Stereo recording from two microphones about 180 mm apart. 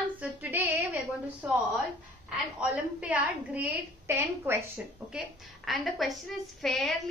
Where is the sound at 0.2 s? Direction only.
10° right (ahead or behind).